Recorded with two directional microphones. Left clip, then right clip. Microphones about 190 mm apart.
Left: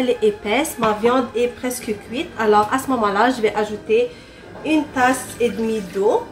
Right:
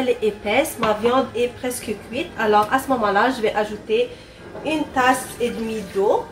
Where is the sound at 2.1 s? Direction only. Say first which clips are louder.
Left 1 dB; 25° left (ahead or behind).